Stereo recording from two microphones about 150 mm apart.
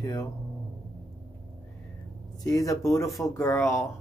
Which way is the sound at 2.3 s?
25° left (ahead or behind).